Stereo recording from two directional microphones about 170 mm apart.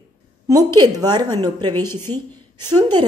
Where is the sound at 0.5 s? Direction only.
25° right (ahead or behind).